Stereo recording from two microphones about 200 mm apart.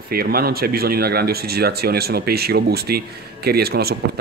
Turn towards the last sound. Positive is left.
turn(degrees=-50)  # may be behind; listen again after turning